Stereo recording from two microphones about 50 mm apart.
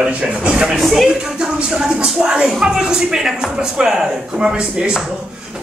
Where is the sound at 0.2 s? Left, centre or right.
Centre.